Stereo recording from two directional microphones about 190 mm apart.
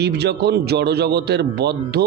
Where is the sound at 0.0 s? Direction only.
60° right (ahead or behind).